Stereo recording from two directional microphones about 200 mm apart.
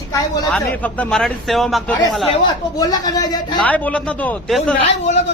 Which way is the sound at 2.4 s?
20° left (ahead or behind).